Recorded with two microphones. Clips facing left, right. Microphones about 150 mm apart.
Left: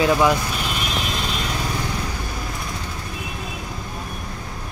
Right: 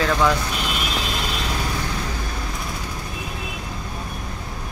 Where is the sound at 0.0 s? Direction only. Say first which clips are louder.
Left 2 dB; 15° left (ahead or behind).